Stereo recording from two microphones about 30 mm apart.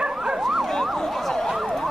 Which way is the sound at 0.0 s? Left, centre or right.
Right.